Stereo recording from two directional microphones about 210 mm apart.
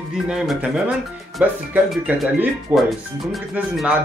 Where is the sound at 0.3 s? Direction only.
5° right (ahead or behind).